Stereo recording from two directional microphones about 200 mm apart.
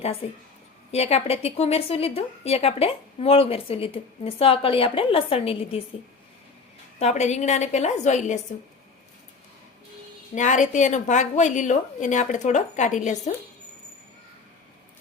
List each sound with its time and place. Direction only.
0.9 s a woman's voice: 30° left (ahead or behind)
7.0 s a woman's voice: 35° left (ahead or behind)
10.3 s a woman's voice: 35° left (ahead or behind)